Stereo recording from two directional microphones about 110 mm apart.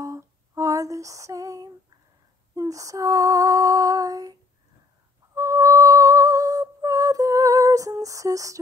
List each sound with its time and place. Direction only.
0.0 s lullaby: 30° right (ahead or behind)
2.5 s female singing: 30° right (ahead or behind)
5.3 s music: 30° right (ahead or behind)